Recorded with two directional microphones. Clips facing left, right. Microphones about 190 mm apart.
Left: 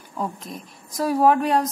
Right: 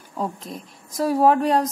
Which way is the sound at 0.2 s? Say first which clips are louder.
Right 1 dB; 30° right (ahead or behind).